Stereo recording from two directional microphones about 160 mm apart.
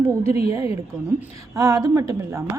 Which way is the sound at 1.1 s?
20° right (ahead or behind).